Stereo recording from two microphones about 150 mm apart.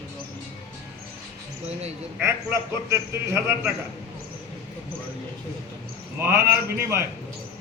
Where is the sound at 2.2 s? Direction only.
20° right (ahead or behind).